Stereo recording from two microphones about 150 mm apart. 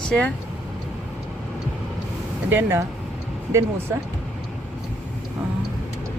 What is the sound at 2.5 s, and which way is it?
Speech, 15° right (ahead or behind).